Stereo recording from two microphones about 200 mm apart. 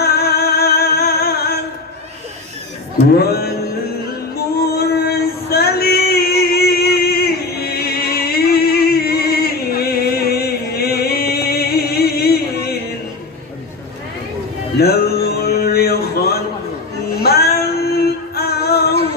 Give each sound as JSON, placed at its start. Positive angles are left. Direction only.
{"t": 0.0, "sound": "music", "side_deg": 50}
{"t": 3.2, "sound": "music", "side_deg": 50}
{"t": 4.7, "sound": "female singing", "side_deg": 50}
{"t": 14.8, "sound": "music", "side_deg": 50}
{"t": 17.2, "sound": "female singing", "side_deg": 50}